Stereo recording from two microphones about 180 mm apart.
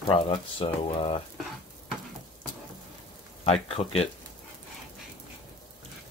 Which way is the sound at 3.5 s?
35° left (ahead or behind).